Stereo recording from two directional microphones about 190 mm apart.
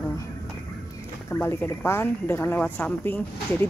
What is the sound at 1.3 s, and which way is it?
Speech, 10° left (ahead or behind).